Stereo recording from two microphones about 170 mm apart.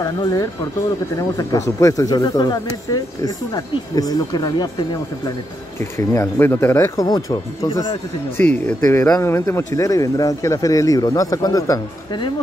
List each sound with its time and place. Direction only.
0.0 s speech: 20° left (ahead or behind)
8.4 s speech: 5° left (ahead or behind); by 12.3 s 25° left (ahead or behind)